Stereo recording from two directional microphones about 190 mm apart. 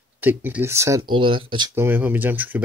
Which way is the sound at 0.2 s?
10° right (ahead or behind).